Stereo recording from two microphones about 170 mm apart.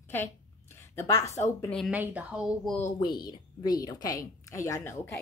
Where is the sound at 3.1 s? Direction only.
25° left (ahead or behind).